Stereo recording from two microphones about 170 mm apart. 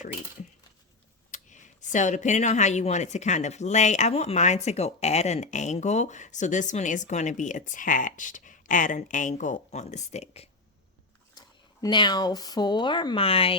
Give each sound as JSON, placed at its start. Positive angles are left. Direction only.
{"t": 1.3, "sound": "speech", "side_deg": 45}
{"t": 11.3, "sound": "speech", "side_deg": 25}